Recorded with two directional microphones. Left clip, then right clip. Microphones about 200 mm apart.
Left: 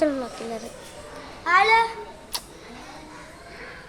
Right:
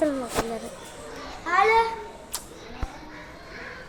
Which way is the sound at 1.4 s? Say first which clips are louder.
Left 3 dB; 20° left (ahead or behind).